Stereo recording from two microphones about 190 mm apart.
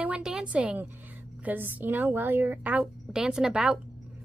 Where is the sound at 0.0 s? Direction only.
5° right (ahead or behind).